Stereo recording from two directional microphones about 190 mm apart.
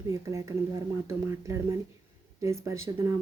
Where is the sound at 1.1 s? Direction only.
15° right (ahead or behind).